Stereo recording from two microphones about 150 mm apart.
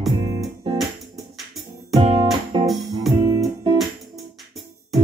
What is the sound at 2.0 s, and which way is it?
Music, 35° right (ahead or behind).